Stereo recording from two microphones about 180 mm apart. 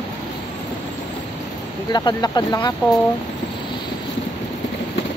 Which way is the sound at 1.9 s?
25° left (ahead or behind).